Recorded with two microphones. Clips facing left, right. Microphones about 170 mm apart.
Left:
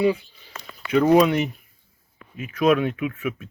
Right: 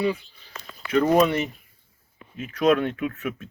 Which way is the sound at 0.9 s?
10° left (ahead or behind).